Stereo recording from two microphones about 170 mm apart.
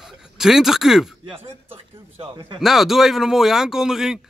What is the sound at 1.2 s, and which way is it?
Speech, 30° right (ahead or behind).